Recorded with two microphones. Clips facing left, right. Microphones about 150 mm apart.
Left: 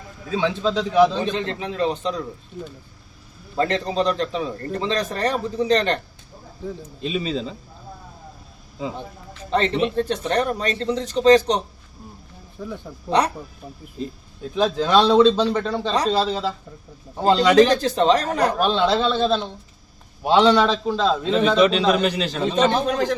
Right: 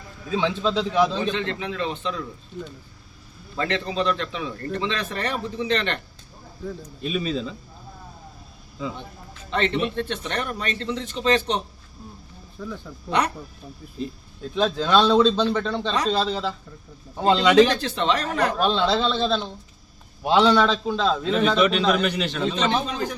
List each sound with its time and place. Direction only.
0.3 s a man's voice: 5° left (ahead or behind)
1.2 s a man's voice: 40° left (ahead or behind)
3.6 s a man's voice: 40° left (ahead or behind)
7.0 s a man's voice: 25° left (ahead or behind)
9.5 s a man's voice: 35° left (ahead or behind)
12.5 s a man's voice: 20° left (ahead or behind)
13.1 s a man's voice: 35° left (ahead or behind)
14.5 s a man's voice: 5° left (ahead or behind)
17.4 s a man's voice: centre (ahead or behind)
17.7 s a man's voice: 40° left (ahead or behind)
18.5 s a man's voice: 10° left (ahead or behind)
20.2 s a man's voice: 5° right (ahead or behind)
20.5 s a man's voice: 10° left (ahead or behind)
21.2 s a man's voice: 25° left (ahead or behind); by 23.0 s 45° left (ahead or behind)